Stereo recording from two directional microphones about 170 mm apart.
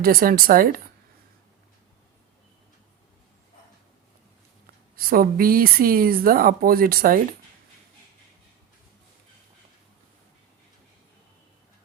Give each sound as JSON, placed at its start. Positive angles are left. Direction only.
{"t": 0.0, "sound": "speech", "side_deg": -60}
{"t": 4.9, "sound": "speech", "side_deg": -60}